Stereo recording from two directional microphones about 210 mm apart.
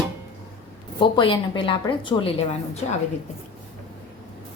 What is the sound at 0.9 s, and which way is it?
A woman's voice, 25° left (ahead or behind).